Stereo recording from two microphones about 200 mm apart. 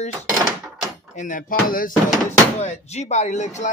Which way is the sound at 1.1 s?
40° left (ahead or behind).